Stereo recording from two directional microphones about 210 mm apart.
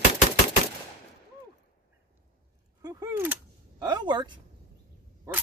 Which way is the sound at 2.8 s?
15° right (ahead or behind).